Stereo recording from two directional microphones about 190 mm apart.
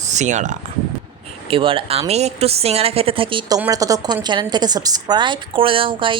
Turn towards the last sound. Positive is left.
turn(degrees=-25)  # may be behind; listen again after turning